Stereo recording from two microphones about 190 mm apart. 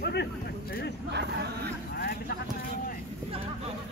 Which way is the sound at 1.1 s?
60° right (ahead or behind).